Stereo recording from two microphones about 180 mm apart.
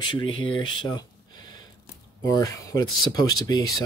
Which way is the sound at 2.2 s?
20° left (ahead or behind).